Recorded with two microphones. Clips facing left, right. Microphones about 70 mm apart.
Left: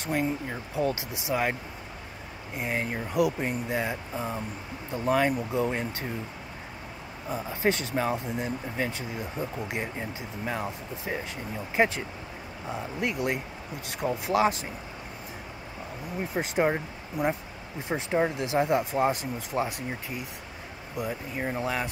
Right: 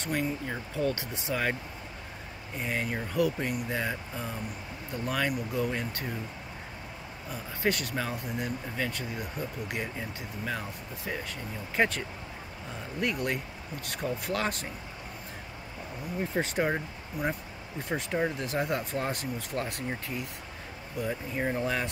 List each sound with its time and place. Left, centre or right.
0.0 s speech: left
0.8 s speech: centre
7.2 s speech: left
13.0 s speech: left
16.3 s speech: left
21.1 s speech: centre